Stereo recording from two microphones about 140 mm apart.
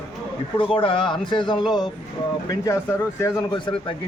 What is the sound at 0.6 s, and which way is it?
A man's voice, 40° left (ahead or behind).